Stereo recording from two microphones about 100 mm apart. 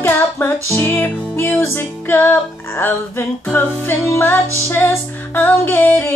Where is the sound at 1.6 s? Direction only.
25° left (ahead or behind).